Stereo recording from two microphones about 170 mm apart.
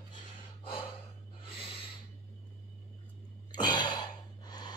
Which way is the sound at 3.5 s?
25° left (ahead or behind).